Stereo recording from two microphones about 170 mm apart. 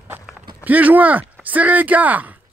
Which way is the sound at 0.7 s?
10° right (ahead or behind).